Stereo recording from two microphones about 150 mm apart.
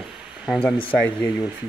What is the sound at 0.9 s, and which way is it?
Speech, 10° left (ahead or behind).